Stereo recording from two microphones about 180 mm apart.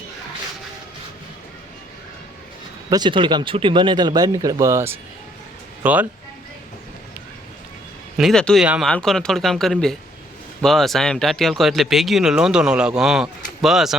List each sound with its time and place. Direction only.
2.9 s speech: 25° right (ahead or behind); by 6.1 s 10° right (ahead or behind)
8.2 s speech: 5° left (ahead or behind)